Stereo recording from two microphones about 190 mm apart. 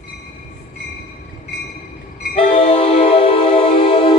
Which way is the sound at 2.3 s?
30° left (ahead or behind).